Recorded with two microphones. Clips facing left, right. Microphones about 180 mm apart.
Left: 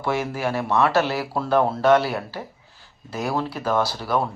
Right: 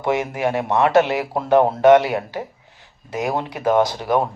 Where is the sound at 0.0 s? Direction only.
20° right (ahead or behind).